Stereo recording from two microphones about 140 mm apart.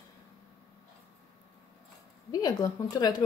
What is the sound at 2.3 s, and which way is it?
Speech, 30° left (ahead or behind).